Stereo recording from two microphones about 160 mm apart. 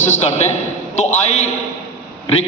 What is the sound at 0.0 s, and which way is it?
Speech, 45° left (ahead or behind).